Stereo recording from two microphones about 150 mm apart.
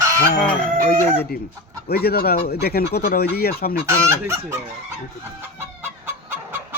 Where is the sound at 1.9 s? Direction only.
90° left.